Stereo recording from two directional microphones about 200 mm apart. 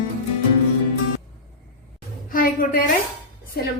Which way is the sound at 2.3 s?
45° left (ahead or behind).